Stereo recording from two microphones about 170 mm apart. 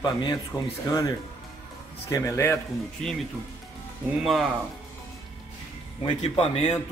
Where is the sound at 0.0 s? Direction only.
25° left (ahead or behind).